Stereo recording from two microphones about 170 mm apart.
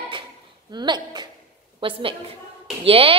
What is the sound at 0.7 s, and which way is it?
A child's voice, 25° right (ahead or behind).